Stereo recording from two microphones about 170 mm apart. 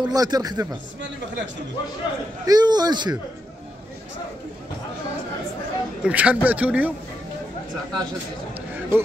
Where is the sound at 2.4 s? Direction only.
25° right (ahead or behind).